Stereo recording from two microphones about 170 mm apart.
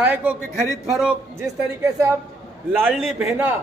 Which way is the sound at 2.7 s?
10° right (ahead or behind).